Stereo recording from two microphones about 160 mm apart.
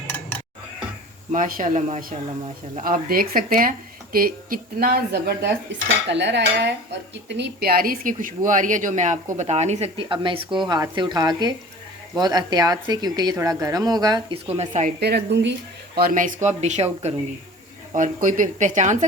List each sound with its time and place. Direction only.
1.3 s speech: 60° right (ahead or behind); by 5.5 s 85° right
6.1 s cutlery: 90° right
7.3 s speech: 90° right; by 14.3 s 25° right (ahead or behind)
14.3 s speech: 40° right (ahead or behind)
15.0 s cutlery: 90° right
16.0 s speech: 60° right (ahead or behind); by 17.2 s 45° right (ahead or behind)
17.9 s speech: 55° right (ahead or behind)